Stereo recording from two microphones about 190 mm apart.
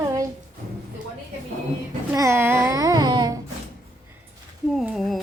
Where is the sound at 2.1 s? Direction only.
15° right (ahead or behind).